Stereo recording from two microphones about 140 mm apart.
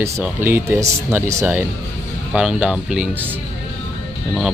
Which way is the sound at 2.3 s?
5° right (ahead or behind).